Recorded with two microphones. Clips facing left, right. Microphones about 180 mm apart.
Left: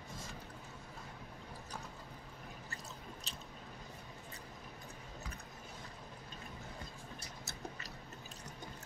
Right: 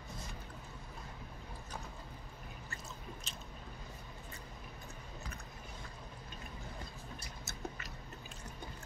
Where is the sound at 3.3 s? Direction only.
35° left (ahead or behind).